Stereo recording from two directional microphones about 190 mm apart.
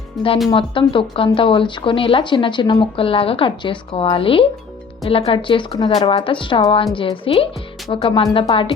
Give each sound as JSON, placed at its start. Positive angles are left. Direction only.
{"t": 0.5, "sound": "speech", "side_deg": 25}